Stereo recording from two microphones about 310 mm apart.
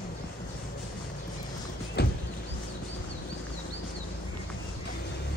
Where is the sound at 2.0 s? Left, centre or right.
Left.